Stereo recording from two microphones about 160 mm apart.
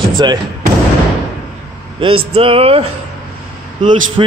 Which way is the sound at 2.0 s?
35° right (ahead or behind).